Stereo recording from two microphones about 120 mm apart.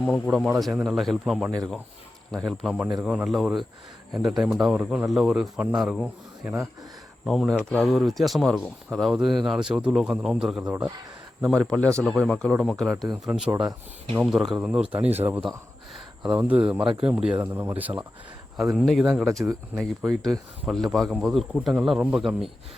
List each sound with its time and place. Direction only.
0.0 s speech: centre (ahead or behind)
10.7 s speech: 15° right (ahead or behind)
11.3 s speech: centre (ahead or behind)
13.5 s speech: 20° right (ahead or behind)
14.2 s speech: 5° right (ahead or behind)
16.3 s speech: 10° right (ahead or behind)
17.4 s speech: 20° right (ahead or behind)
18.8 s speech: centre (ahead or behind)